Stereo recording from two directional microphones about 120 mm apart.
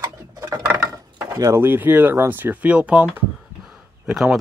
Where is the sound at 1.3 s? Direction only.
25° right (ahead or behind).